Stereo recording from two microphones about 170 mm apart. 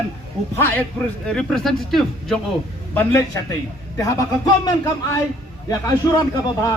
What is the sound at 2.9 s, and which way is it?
A man's voice, 15° left (ahead or behind).